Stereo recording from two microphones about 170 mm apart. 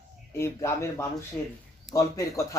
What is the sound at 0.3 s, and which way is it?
A man's voice, 15° left (ahead or behind).